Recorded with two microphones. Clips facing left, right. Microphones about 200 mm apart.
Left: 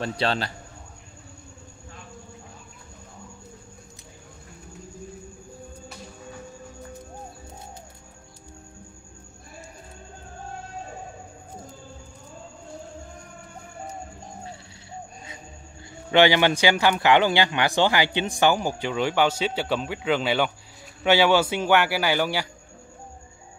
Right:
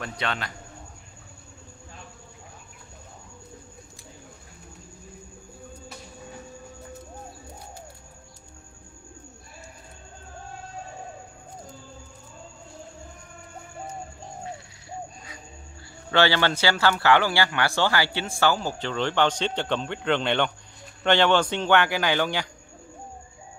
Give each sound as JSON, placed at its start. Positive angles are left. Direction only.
{"t": 0.0, "sound": "a man's voice", "side_deg": 30}
{"t": 16.1, "sound": "speech", "side_deg": 15}